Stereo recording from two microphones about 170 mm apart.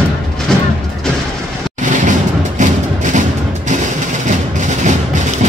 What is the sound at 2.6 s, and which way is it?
Music, 45° right (ahead or behind).